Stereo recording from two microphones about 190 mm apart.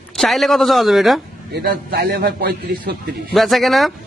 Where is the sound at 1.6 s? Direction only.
55° right (ahead or behind).